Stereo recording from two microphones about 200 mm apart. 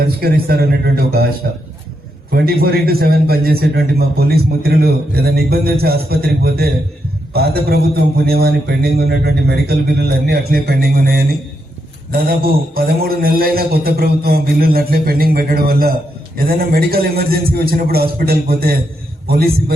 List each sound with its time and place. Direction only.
0.0 s a man's voice: 50° right (ahead or behind)
2.3 s a man's voice: 50° right (ahead or behind)